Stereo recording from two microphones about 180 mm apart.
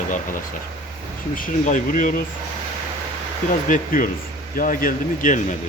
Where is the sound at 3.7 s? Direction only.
45° left (ahead or behind).